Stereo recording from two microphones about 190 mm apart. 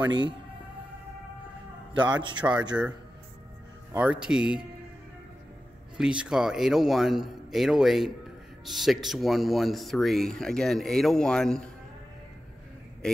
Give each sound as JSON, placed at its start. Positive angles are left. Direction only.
{"t": 2.0, "sound": "a man's voice", "side_deg": -25}
{"t": 2.7, "sound": "speech", "side_deg": -5}
{"t": 3.9, "sound": "speech", "side_deg": -5}
{"t": 5.9, "sound": "speech", "side_deg": -5}
{"t": 13.0, "sound": "speech", "side_deg": 5}